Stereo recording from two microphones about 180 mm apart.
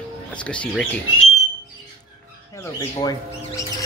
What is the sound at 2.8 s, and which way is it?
Squawk, 20° left (ahead or behind).